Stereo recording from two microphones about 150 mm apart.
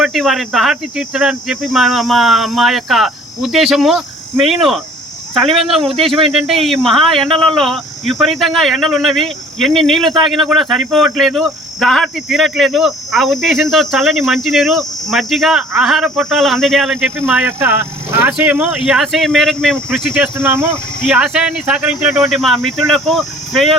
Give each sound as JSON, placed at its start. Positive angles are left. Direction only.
{"t": 0.0, "sound": "speech", "side_deg": 0}
{"t": 20.1, "sound": "speech", "side_deg": -15}
{"t": 21.1, "sound": "speech", "side_deg": -5}